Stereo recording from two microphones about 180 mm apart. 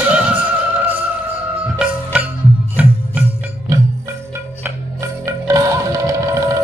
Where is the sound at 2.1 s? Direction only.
10° right (ahead or behind).